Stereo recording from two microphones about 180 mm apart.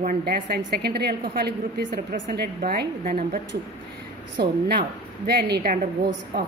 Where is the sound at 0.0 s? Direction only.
50° right (ahead or behind).